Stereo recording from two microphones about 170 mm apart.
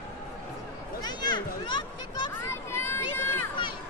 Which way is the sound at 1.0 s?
25° left (ahead or behind).